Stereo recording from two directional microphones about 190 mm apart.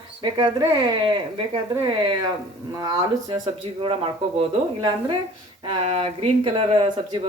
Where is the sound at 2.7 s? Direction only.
15° right (ahead or behind).